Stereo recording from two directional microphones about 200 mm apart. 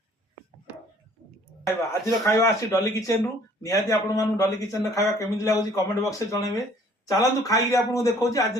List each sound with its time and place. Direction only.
1.9 s a man's voice: 15° left (ahead or behind)